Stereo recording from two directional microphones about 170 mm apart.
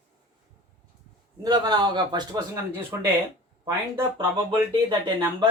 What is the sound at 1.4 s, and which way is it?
Speech, 25° right (ahead or behind).